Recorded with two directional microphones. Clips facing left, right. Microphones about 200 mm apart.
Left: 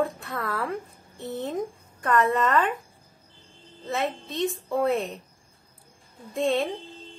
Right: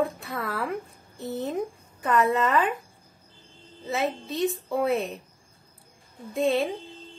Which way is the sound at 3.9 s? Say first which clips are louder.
Right 1 dB; 5° right (ahead or behind).